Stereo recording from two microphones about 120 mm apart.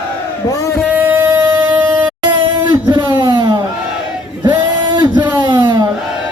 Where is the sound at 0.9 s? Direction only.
15° right (ahead or behind).